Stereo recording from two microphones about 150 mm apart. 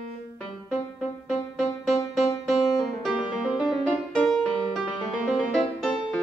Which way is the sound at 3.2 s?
30° left (ahead or behind).